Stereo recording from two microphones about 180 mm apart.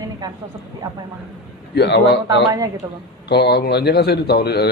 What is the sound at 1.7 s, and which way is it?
Speech, 70° left (ahead or behind).